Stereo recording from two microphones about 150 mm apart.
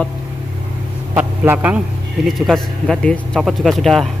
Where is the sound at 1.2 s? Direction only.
15° right (ahead or behind).